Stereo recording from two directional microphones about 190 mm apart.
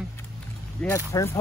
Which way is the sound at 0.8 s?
15° left (ahead or behind).